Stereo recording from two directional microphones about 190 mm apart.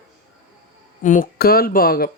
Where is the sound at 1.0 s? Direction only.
45° left (ahead or behind).